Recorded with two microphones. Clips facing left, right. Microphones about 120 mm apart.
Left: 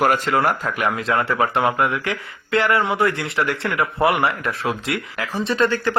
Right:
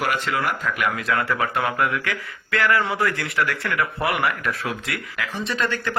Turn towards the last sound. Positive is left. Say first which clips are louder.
# left 6 dB
turn(degrees=30)  # may be behind; listen again after turning